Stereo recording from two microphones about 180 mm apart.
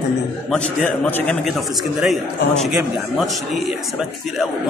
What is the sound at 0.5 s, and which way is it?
A man's voice, 10° left (ahead or behind).